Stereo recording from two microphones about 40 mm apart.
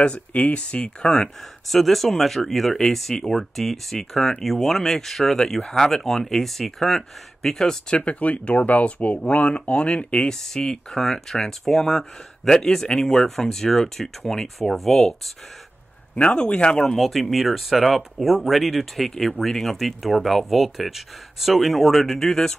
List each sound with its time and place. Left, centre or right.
0.0 s speech: left
1.7 s speech: centre
7.9 s speech: left
10.1 s speech: centre
16.3 s speech: left
16.7 s speech: centre
19.7 s speech: centre